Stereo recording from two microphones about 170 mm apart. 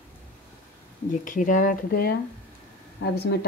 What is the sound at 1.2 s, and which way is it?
Speech, 50° left (ahead or behind).